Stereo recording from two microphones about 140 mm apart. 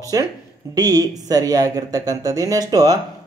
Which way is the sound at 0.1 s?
25° right (ahead or behind).